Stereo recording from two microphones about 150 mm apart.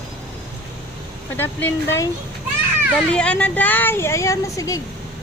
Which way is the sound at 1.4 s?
15° left (ahead or behind).